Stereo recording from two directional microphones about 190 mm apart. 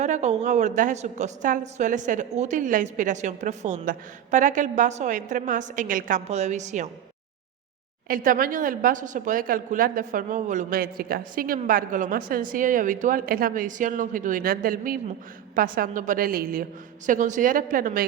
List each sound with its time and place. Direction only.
0.0 s a woman's voice: 35° right (ahead or behind)
8.0 s speech: 50° right (ahead or behind)